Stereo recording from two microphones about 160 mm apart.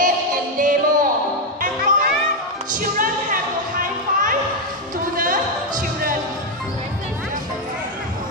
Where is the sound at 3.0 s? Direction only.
60° right (ahead or behind).